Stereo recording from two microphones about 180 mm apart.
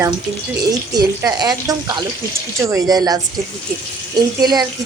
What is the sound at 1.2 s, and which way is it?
A woman's voice, 20° right (ahead or behind).